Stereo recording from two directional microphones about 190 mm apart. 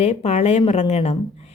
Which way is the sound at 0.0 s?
35° left (ahead or behind).